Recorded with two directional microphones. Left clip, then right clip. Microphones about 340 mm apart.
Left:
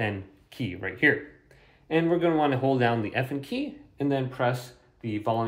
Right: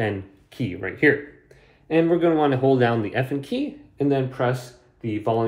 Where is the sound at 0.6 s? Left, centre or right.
Left.